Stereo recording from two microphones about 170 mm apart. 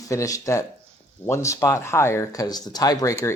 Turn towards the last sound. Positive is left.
turn(degrees=20)  # may be behind; listen again after turning